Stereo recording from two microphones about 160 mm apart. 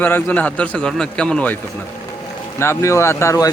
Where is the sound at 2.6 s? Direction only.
15° left (ahead or behind).